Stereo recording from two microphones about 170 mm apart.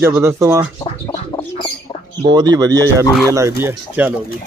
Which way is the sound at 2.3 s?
25° right (ahead or behind).